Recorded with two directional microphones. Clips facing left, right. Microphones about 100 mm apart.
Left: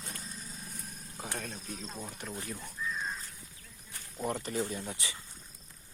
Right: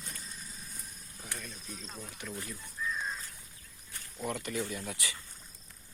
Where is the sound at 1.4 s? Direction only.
65° left (ahead or behind).